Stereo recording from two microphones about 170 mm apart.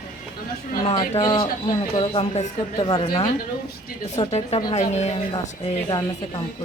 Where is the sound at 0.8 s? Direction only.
30° left (ahead or behind).